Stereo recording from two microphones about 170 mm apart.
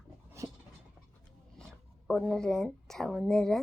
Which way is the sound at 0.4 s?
20° right (ahead or behind).